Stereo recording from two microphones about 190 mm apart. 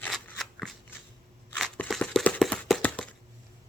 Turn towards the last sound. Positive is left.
turn(degrees=5)  # may be behind; listen again after turning